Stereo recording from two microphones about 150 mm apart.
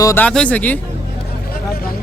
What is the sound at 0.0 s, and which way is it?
Speech, 20° left (ahead or behind).